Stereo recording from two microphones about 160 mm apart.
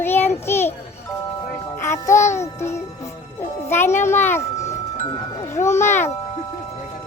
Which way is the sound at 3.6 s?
15° left (ahead or behind).